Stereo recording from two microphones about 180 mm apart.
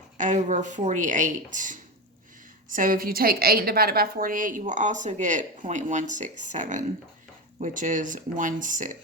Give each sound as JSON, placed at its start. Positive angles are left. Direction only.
{"t": 0.2, "sound": "a woman's voice", "side_deg": -45}